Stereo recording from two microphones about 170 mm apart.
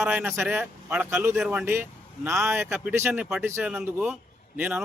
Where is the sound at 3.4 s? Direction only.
15° right (ahead or behind).